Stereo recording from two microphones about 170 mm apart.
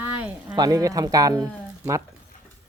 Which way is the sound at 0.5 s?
20° right (ahead or behind).